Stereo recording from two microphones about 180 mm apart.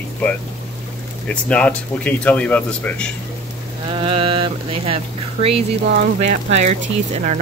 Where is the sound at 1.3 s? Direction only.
5° left (ahead or behind).